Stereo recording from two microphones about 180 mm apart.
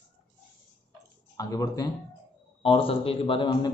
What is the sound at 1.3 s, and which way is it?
A man's voice, 20° left (ahead or behind).